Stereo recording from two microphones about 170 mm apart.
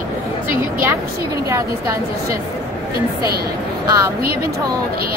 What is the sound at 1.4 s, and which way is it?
Speech, 15° right (ahead or behind).